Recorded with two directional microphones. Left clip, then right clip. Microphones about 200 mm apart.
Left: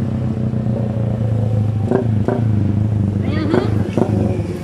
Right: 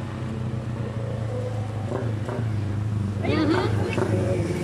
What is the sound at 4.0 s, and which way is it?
Vehicle, 30° left (ahead or behind).